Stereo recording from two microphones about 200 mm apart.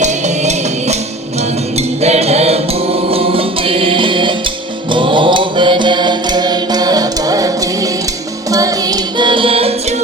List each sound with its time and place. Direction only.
0.0 s music: 35° right (ahead or behind)
4.9 s mantra: 25° right (ahead or behind)
8.4 s music: 15° right (ahead or behind)